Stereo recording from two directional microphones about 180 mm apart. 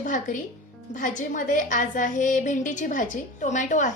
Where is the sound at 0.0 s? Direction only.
45° left (ahead or behind).